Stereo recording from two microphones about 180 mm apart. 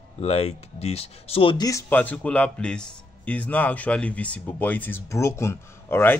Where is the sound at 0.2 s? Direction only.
35° left (ahead or behind).